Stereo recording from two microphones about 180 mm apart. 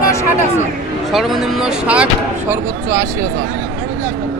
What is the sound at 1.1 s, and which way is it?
Speech, centre (ahead or behind).